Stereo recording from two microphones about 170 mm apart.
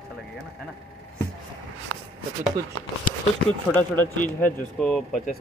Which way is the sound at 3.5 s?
10° left (ahead or behind).